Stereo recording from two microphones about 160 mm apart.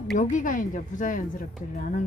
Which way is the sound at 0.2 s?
55° left (ahead or behind).